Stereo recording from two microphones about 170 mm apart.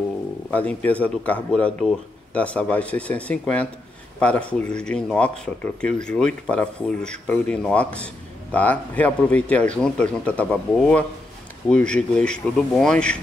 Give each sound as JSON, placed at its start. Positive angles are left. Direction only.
{"t": 0.5, "sound": "speech", "side_deg": 10}